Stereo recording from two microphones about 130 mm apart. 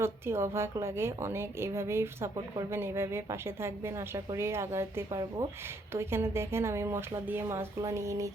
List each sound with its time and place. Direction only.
0.0 s a woman's voice: 20° right (ahead or behind)